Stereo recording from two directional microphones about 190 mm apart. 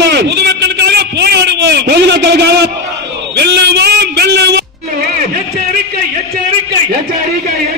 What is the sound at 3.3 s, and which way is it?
Music, 60° right (ahead or behind).